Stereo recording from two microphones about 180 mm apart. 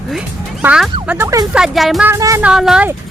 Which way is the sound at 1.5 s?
Centre (ahead or behind).